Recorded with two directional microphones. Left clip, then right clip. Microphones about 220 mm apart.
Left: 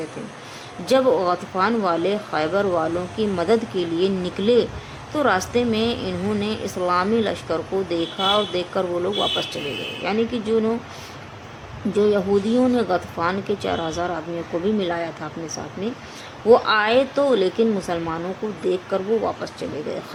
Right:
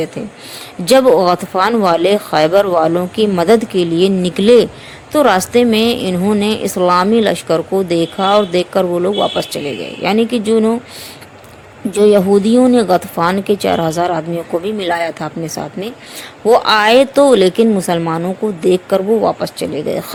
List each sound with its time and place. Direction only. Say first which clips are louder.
0.9 s a woman's voice: right 9 dB; 35° right (ahead or behind)
11.9 s a woman's voice: right 9 dB; 35° right (ahead or behind)